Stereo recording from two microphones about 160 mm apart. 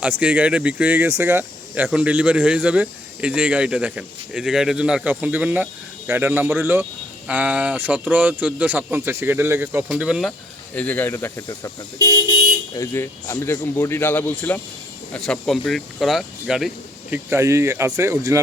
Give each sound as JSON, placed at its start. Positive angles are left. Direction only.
{"t": 0.0, "sound": "speech", "side_deg": -10}
{"t": 10.8, "sound": "speech", "side_deg": 10}
{"t": 17.2, "sound": "speech", "side_deg": -15}